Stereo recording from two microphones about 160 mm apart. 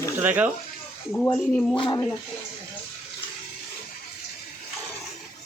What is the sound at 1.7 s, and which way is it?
Speech, 30° left (ahead or behind).